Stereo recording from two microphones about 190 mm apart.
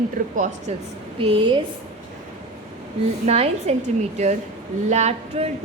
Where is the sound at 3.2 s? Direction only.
35° right (ahead or behind).